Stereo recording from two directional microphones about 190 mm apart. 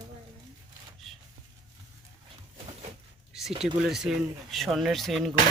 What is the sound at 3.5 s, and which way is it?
Speech, 30° right (ahead or behind).